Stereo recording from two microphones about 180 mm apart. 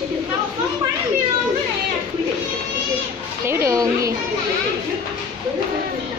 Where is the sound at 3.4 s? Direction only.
15° right (ahead or behind).